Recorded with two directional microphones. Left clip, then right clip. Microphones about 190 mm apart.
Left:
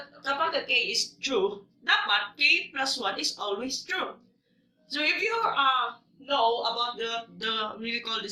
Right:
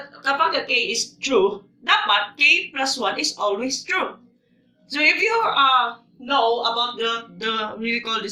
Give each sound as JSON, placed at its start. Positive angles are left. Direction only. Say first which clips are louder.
{"t": 0.2, "sound": "a sound", "louder": "right 8 dB", "side_deg": -30}
{"t": 0.7, "sound": "speech", "louder": "right 4 dB", "side_deg": -15}
{"t": 6.2, "sound": "speech", "louder": "right 6 dB", "side_deg": -25}